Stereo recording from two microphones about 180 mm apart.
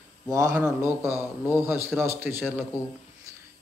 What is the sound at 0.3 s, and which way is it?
Speech, 20° right (ahead or behind).